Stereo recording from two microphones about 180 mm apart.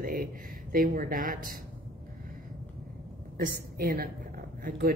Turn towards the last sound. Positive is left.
turn(degrees=-55)  # may be behind; listen again after turning